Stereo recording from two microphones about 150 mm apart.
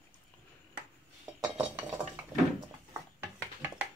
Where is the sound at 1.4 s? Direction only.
10° right (ahead or behind).